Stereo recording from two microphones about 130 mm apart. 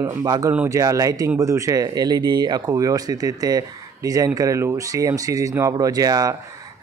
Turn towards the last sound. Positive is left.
turn(degrees=-30)  # may be behind; listen again after turning